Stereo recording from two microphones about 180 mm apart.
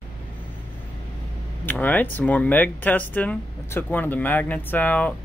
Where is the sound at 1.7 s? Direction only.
10° left (ahead or behind).